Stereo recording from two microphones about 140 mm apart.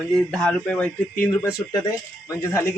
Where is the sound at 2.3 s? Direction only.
20° left (ahead or behind).